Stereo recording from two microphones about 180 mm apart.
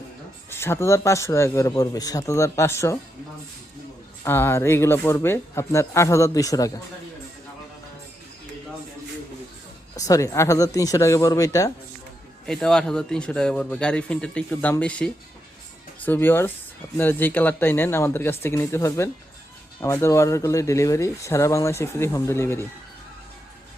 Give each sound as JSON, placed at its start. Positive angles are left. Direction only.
{"t": 0.5, "sound": "speech", "side_deg": 15}
{"t": 4.2, "sound": "speech", "side_deg": 10}
{"t": 9.9, "sound": "speech", "side_deg": 20}
{"t": 12.5, "sound": "a man's voice", "side_deg": 5}